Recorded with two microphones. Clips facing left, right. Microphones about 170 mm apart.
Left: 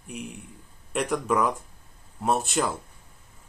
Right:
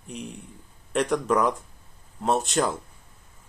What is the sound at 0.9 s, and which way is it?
Speech, 5° left (ahead or behind).